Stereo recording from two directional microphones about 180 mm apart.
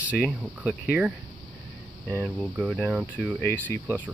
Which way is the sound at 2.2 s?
5° left (ahead or behind).